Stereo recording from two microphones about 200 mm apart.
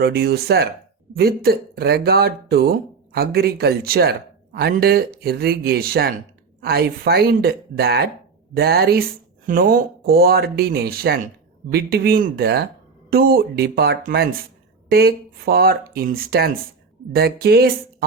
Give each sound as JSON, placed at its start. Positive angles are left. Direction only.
{"t": 0.0, "sound": "speech", "side_deg": -55}